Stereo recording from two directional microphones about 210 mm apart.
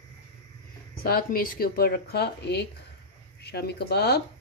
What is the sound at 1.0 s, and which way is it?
Speech, 45° left (ahead or behind).